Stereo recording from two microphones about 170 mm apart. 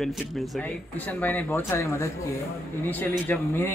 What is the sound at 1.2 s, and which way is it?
Speech, 10° left (ahead or behind).